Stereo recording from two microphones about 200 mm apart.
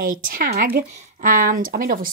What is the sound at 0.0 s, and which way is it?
Speech, 45° right (ahead or behind).